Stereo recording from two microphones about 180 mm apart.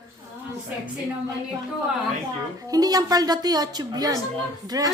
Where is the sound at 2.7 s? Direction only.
20° right (ahead or behind).